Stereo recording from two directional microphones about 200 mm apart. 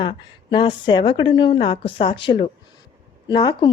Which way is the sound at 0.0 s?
25° left (ahead or behind).